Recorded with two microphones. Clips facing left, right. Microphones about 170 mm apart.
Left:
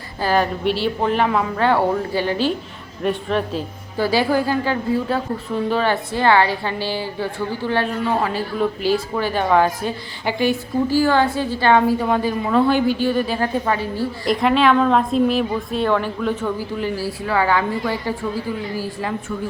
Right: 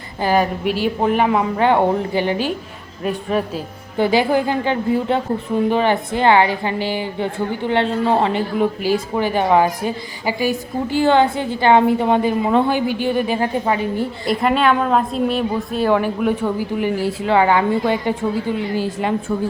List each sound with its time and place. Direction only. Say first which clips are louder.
0.2 s a woman's voice: right 2 dB; 15° right (ahead or behind)
8.5 s speech: left 1 dB; 10° right (ahead or behind)
10.8 s a woman's voice: right 3 dB; 20° right (ahead or behind)
14.3 s a woman's voice: left 1 dB; centre (ahead or behind)
15.9 s a woman's voice: right 5 dB; 10° right (ahead or behind)